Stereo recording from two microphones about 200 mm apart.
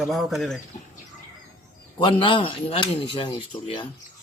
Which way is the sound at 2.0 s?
25° left (ahead or behind).